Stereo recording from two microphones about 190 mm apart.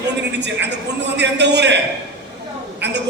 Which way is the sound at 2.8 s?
65° right (ahead or behind).